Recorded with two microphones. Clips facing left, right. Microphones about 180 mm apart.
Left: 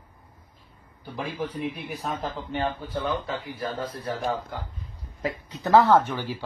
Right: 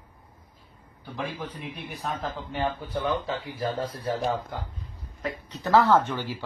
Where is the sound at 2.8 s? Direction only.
20° right (ahead or behind).